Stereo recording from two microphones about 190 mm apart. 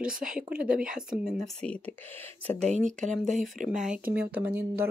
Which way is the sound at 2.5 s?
40° right (ahead or behind).